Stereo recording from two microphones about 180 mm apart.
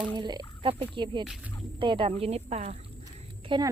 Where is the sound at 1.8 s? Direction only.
25° right (ahead or behind).